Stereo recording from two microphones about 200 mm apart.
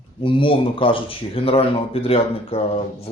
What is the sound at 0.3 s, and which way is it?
A man's voice, 25° left (ahead or behind).